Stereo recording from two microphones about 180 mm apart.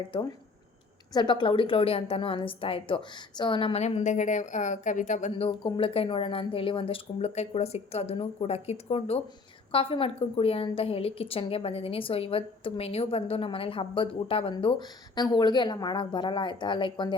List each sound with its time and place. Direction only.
1.1 s a woman's voice: 25° left (ahead or behind); by 5.3 s 45° left (ahead or behind)
5.3 s a woman's voice: 30° left (ahead or behind)